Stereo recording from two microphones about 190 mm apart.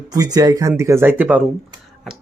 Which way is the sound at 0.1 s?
20° right (ahead or behind).